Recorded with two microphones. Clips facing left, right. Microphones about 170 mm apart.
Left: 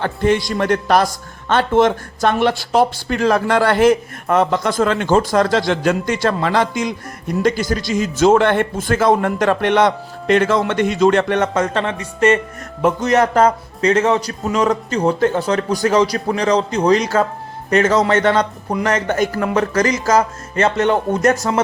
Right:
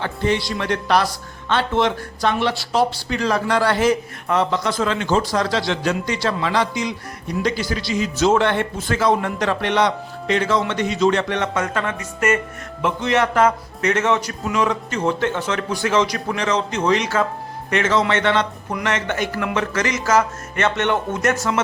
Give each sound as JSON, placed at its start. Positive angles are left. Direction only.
{"t": 0.0, "sound": "a man's voice", "side_deg": 50}
{"t": 12.8, "sound": "speech", "side_deg": 40}